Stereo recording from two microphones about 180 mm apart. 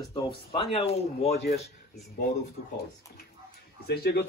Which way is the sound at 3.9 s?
65° left (ahead or behind).